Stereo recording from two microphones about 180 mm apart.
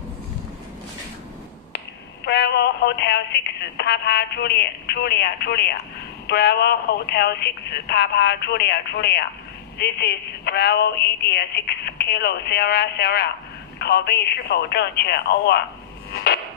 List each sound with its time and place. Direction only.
2.2 s speech: 70° left (ahead or behind)